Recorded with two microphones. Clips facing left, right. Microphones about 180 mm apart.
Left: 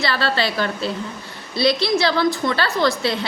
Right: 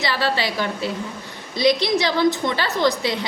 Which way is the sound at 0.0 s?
15° right (ahead or behind).